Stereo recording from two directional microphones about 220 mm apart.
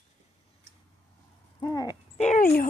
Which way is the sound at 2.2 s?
35° left (ahead or behind).